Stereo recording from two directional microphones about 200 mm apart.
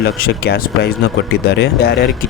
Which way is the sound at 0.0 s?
55° left (ahead or behind).